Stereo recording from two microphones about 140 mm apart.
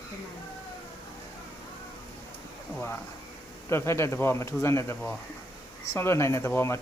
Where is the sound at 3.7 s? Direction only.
20° left (ahead or behind).